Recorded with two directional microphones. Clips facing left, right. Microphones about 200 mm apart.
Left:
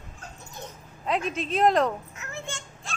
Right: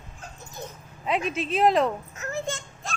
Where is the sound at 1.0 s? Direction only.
5° right (ahead or behind).